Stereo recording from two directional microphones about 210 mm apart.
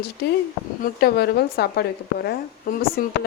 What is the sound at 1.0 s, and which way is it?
A woman's voice, 50° left (ahead or behind).